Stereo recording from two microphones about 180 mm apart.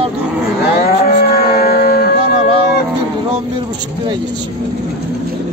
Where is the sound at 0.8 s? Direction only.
55° left (ahead or behind).